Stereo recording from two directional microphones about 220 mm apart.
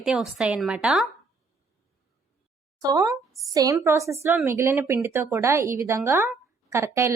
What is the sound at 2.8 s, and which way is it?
A woman's voice, 15° right (ahead or behind).